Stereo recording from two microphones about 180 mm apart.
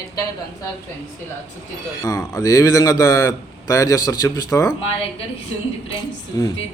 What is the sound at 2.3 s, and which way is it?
A man's voice, 20° left (ahead or behind).